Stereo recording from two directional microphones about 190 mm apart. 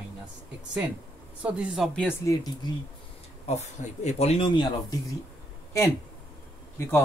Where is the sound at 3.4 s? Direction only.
35° left (ahead or behind).